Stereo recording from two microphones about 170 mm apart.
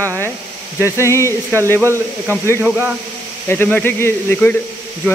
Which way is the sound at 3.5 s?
10° left (ahead or behind).